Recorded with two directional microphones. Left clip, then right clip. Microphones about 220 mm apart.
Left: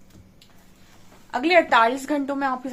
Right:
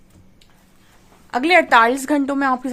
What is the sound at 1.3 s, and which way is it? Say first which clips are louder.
A woman's voice: right 4 dB; 45° right (ahead or behind).